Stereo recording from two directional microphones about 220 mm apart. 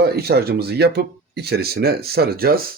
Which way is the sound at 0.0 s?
45° right (ahead or behind).